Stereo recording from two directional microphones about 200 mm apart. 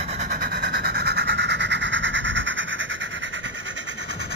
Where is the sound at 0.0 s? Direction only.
35° right (ahead or behind); by 3.3 s 65° right (ahead or behind).